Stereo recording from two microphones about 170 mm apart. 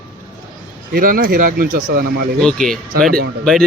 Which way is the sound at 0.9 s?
55° right (ahead or behind).